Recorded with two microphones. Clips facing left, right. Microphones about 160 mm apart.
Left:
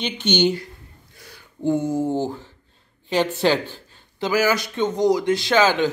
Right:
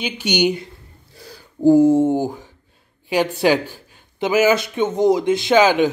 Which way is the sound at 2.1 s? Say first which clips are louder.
Right 3 dB; 15° right (ahead or behind).